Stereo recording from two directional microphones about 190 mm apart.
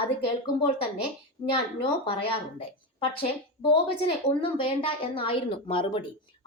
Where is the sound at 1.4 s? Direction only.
30° left (ahead or behind).